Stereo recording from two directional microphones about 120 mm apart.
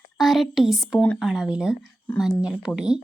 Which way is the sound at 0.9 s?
10° left (ahead or behind).